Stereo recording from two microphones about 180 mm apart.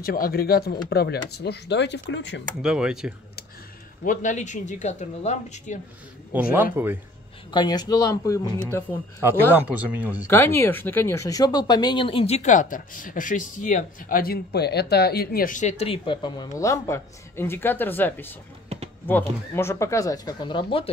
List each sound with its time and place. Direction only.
0.0 s speech: 55° left (ahead or behind); by 2.4 s 80° left
2.6 s speech: 5° right (ahead or behind)
4.0 s speech: 45° left (ahead or behind)
6.5 s speech: 10° right (ahead or behind)
7.5 s speech: 20° left (ahead or behind)
9.2 s speech: 10° right (ahead or behind)
10.3 s speech: 10° left (ahead or behind); by 20.9 s 30° left (ahead or behind)